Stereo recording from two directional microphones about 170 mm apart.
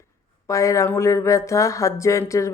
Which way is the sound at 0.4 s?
20° left (ahead or behind).